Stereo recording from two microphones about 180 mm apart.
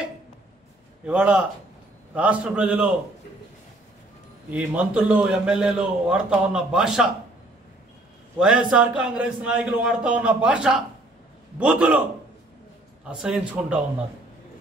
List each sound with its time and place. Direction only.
1.0 s a man's voice: 5° right (ahead or behind)
4.5 s a man's voice: 10° right (ahead or behind)
8.4 s a man's voice: 5° right (ahead or behind)
13.0 s a man's voice: 5° right (ahead or behind)